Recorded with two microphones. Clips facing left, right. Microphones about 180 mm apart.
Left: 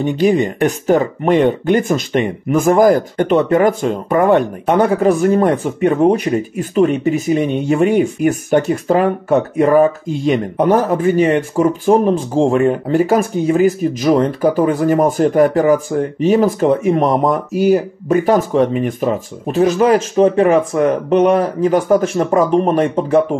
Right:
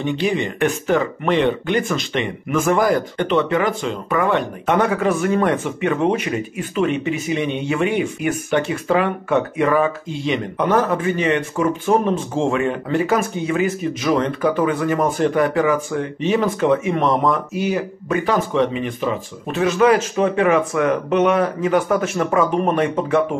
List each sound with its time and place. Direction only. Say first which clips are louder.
0.0 s speech: left 7 dB; 40° left (ahead or behind)